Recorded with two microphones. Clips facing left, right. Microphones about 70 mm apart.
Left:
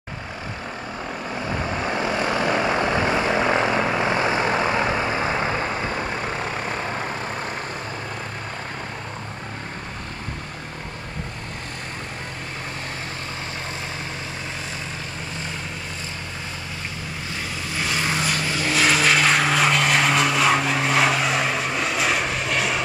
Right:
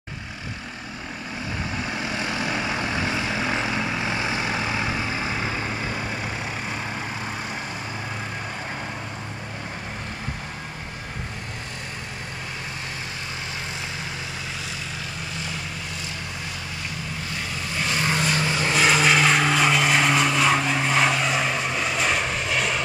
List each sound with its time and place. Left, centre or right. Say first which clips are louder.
1.5 s vehicle: left 5 dB; left
17.7 s vehicle: even; centre
18.3 s vehicle: right 1 dB; centre